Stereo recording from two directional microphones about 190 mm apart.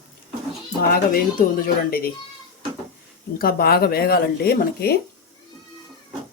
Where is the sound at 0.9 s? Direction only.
50° left (ahead or behind).